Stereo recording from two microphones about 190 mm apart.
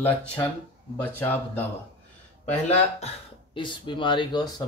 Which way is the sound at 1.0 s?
10° left (ahead or behind).